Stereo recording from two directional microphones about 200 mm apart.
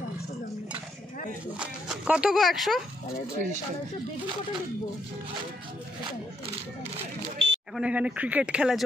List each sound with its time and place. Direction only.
1.6 s speech: 5° right (ahead or behind)
7.3 s a sound: 65° right (ahead or behind)
7.7 s speech: 5° right (ahead or behind)